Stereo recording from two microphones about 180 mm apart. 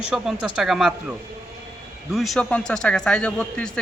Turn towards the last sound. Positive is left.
turn(degrees=5)  # may be behind; listen again after turning